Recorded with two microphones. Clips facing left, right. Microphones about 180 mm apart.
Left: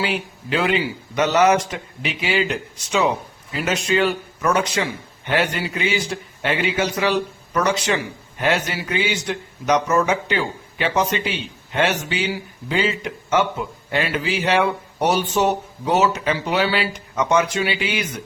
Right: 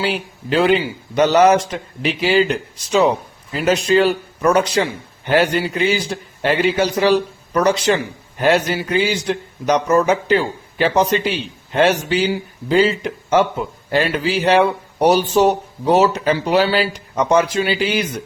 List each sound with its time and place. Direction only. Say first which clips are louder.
0.5 s a man's voice: right 5 dB; 30° right (ahead or behind)